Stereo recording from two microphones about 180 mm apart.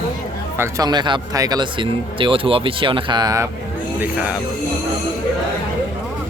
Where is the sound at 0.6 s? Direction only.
20° right (ahead or behind).